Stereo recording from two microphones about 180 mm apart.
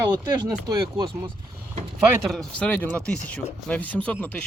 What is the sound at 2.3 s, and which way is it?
Speech, 5° left (ahead or behind).